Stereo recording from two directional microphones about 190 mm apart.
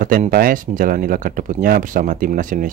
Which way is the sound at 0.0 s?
45° right (ahead or behind).